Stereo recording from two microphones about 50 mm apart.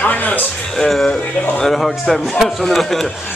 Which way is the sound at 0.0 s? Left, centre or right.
Left.